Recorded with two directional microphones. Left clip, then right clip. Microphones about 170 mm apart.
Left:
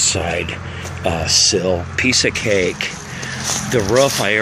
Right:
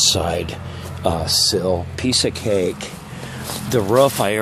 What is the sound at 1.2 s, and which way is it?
Speech, 55° right (ahead or behind).